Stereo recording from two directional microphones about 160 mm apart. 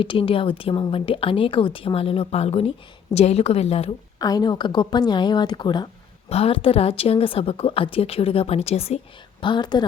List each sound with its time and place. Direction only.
0.0 s a woman's voice: 35° left (ahead or behind)
4.2 s a woman's voice: 25° left (ahead or behind); by 9.0 s 40° left (ahead or behind)
9.4 s a woman's voice: 30° left (ahead or behind)